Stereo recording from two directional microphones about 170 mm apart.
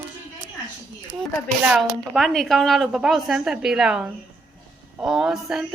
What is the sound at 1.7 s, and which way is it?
A woman's voice, centre (ahead or behind).